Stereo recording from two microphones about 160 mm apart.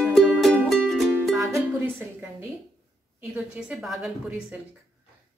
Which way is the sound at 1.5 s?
15° right (ahead or behind).